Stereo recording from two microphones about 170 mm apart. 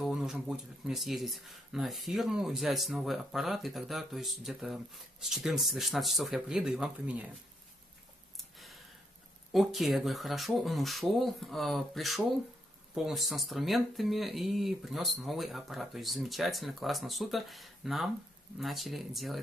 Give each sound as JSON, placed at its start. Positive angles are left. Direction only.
{"t": 0.0, "sound": "speech", "side_deg": -5}
{"t": 8.4, "sound": "a sound", "side_deg": 0}
{"t": 9.5, "sound": "speech", "side_deg": 0}